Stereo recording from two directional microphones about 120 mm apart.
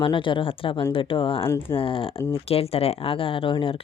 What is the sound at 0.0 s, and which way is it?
Speech, 45° left (ahead or behind).